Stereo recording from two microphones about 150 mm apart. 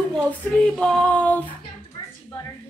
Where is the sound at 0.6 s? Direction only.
5° left (ahead or behind).